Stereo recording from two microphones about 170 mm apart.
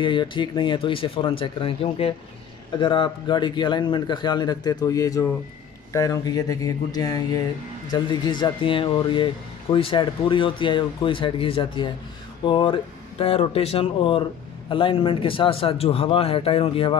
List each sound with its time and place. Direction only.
0.0 s a man's voice: 30° left (ahead or behind)